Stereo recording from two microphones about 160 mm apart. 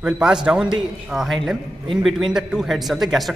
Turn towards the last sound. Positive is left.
turn(degrees=0)  # may be behind; listen again after turning